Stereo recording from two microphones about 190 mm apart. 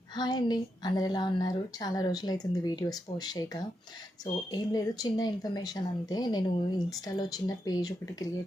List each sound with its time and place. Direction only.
0.2 s a woman's voice: 20° left (ahead or behind)